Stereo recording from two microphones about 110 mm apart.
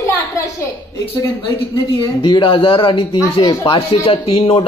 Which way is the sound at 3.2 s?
30° left (ahead or behind).